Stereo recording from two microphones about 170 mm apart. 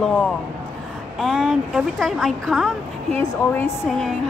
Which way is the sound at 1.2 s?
Centre (ahead or behind).